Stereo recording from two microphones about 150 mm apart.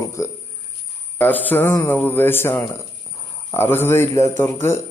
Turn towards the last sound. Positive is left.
turn(degrees=15)  # may be behind; listen again after turning